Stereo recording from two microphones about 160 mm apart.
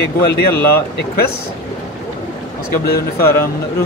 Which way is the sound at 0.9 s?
75° left (ahead or behind).